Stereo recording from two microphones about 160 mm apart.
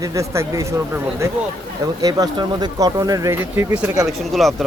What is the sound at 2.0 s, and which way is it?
Speech, 25° right (ahead or behind).